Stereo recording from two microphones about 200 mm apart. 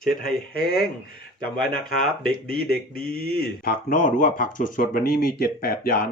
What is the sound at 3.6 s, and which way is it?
Speech, 40° left (ahead or behind).